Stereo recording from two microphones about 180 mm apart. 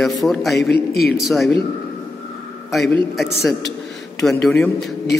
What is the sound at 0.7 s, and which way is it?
Speech, 65° left (ahead or behind).